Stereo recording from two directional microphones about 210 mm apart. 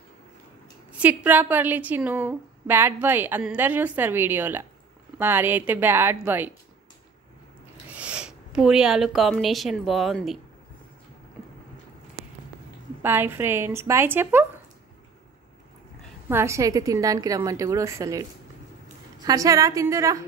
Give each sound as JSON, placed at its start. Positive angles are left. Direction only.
{"t": 0.9, "sound": "a woman's voice", "side_deg": -5}
{"t": 7.9, "sound": "speech", "side_deg": -5}
{"t": 13.0, "sound": "a woman's voice", "side_deg": -10}
{"t": 16.3, "sound": "a woman's voice", "side_deg": -10}
{"t": 19.2, "sound": "a woman's voice", "side_deg": -15}